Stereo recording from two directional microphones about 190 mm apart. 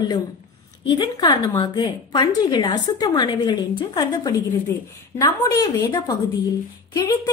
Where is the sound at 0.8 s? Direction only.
25° left (ahead or behind).